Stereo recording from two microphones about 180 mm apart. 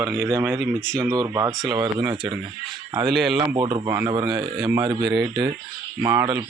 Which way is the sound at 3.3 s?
20° right (ahead or behind).